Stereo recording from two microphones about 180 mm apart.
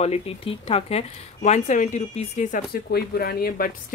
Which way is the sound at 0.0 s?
35° left (ahead or behind).